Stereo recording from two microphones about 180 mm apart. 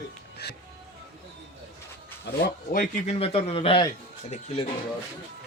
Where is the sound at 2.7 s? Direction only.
40° left (ahead or behind).